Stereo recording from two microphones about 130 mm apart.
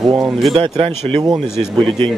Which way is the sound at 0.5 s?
45° right (ahead or behind).